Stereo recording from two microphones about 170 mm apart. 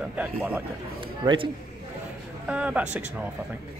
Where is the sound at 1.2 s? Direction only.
30° right (ahead or behind).